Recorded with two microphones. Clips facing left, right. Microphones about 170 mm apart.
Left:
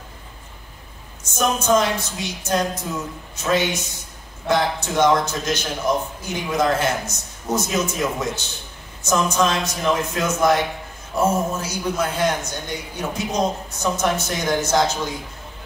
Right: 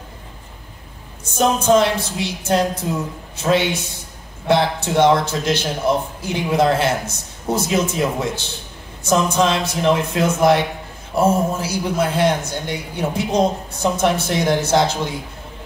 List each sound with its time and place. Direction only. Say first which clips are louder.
1.4 s a man's voice: right 4 dB; 30° right (ahead or behind)